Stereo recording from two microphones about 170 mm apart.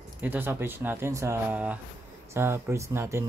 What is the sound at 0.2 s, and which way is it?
Speech, 10° right (ahead or behind).